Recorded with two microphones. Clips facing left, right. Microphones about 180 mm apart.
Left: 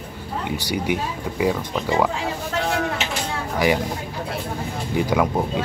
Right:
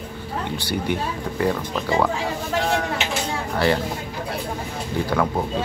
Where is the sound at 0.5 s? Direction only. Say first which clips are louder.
Left 2 dB; 10° left (ahead or behind).